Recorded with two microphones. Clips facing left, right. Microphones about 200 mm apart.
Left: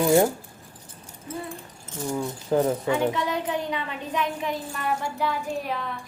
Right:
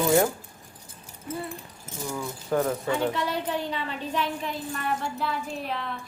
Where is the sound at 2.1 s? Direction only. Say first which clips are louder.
Left 3 dB; 25° left (ahead or behind).